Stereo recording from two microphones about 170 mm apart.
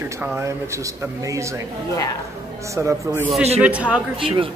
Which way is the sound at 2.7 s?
15° right (ahead or behind).